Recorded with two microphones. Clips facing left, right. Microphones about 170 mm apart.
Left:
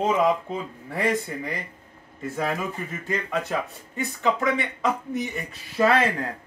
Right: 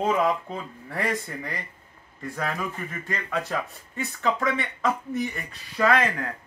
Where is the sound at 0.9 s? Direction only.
Centre (ahead or behind).